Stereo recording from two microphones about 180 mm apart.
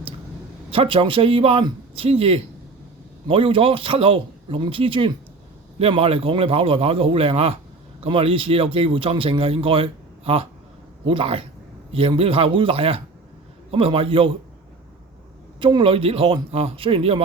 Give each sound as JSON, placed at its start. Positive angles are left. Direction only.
{"t": 0.7, "sound": "speech", "side_deg": -30}
{"t": 15.6, "sound": "speech", "side_deg": -30}